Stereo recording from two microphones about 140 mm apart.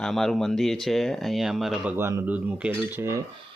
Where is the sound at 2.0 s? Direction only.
20° right (ahead or behind).